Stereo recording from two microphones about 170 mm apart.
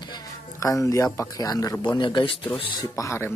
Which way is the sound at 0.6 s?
20° left (ahead or behind).